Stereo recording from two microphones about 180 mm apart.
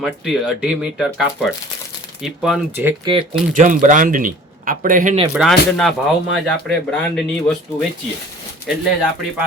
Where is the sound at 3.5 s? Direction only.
45° right (ahead or behind).